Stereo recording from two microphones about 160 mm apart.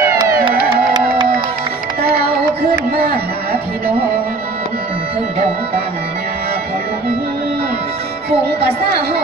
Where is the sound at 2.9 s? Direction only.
70° right (ahead or behind).